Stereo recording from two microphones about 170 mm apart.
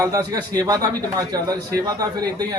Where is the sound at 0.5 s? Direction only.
20° right (ahead or behind).